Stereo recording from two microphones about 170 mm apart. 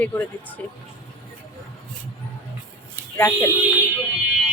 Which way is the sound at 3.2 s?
15° left (ahead or behind).